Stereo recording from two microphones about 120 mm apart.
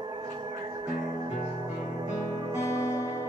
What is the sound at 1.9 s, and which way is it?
Music, 35° right (ahead or behind).